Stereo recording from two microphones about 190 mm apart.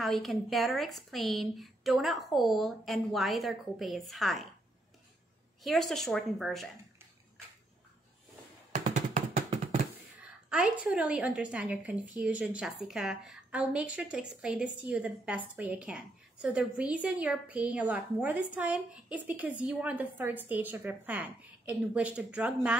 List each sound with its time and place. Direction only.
0.0 s a woman's voice: centre (ahead or behind)
5.6 s a woman's voice: centre (ahead or behind)
8.7 s music: 40° right (ahead or behind)
10.5 s a woman's voice: 5° right (ahead or behind)